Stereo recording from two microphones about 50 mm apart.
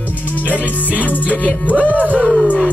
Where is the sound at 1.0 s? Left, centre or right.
Left.